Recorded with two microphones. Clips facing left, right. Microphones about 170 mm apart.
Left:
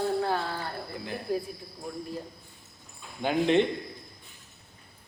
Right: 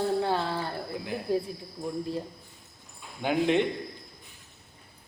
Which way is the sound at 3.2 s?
10° right (ahead or behind).